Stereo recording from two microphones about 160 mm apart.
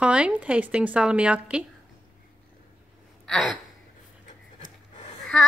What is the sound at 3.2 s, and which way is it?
Gasp, 5° left (ahead or behind).